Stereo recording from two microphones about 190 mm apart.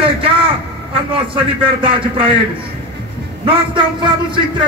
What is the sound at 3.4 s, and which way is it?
Speech, 25° right (ahead or behind).